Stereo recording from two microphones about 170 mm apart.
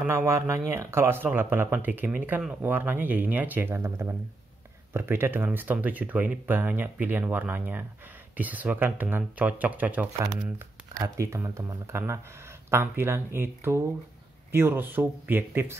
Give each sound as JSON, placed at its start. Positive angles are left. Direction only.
{"t": 0.0, "sound": "speech", "side_deg": -15}